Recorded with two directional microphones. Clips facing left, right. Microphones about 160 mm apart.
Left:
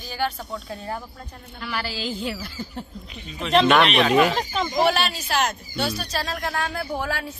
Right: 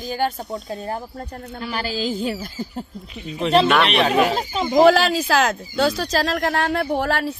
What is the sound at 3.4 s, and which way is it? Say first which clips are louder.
A woman's voice: right 1 dB; 30° right (ahead or behind).